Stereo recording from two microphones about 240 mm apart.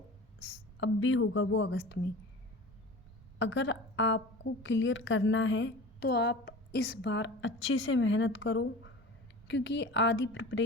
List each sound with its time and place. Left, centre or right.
0.3 s a woman's voice: left
3.3 s a woman's voice: left